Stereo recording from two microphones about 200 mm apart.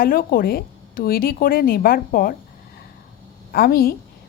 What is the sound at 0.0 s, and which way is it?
A woman's voice, 45° left (ahead or behind).